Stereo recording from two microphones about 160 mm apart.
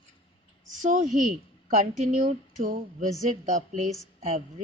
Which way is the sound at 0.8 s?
55° right (ahead or behind).